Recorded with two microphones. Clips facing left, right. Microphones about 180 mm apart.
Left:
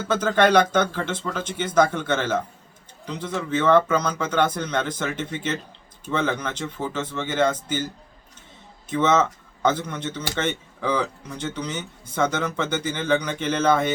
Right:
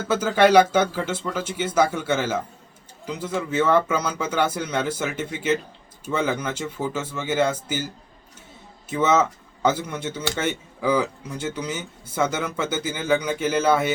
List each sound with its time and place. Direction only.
0.1 s speech: 10° right (ahead or behind)
8.9 s speech: 10° right (ahead or behind)